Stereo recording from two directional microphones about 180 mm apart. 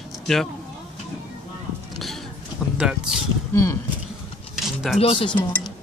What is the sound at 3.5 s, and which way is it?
Speech, 15° left (ahead or behind).